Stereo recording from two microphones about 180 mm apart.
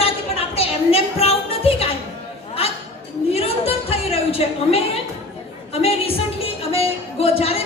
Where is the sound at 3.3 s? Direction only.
35° left (ahead or behind).